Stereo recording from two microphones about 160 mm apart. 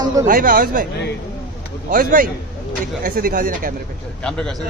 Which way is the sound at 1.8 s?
60° right (ahead or behind).